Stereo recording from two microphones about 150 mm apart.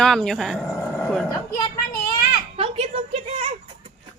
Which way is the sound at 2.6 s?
40° right (ahead or behind).